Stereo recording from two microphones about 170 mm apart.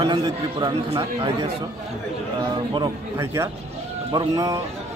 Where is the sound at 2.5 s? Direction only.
25° right (ahead or behind).